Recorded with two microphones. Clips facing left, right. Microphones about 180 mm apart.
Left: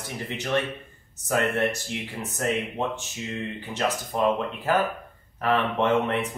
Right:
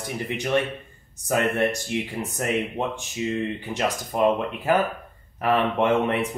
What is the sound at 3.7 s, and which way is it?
Speech, 15° right (ahead or behind).